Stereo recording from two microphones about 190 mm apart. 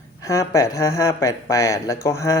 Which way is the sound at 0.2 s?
15° left (ahead or behind).